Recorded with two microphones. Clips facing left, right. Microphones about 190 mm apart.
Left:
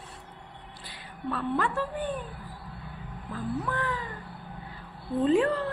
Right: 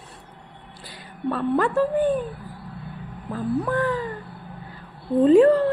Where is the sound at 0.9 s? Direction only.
45° right (ahead or behind).